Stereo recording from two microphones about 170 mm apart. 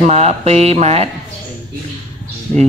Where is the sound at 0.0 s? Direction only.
40° right (ahead or behind).